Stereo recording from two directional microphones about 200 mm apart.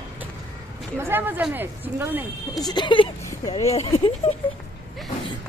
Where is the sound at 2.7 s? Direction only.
25° left (ahead or behind).